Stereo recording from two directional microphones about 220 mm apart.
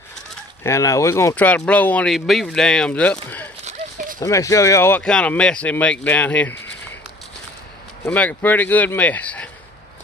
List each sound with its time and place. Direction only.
0.7 s speech: 15° left (ahead or behind)
3.6 s horse: 35° right (ahead or behind)
4.2 s speech: 15° left (ahead or behind)
8.0 s speech: 5° left (ahead or behind)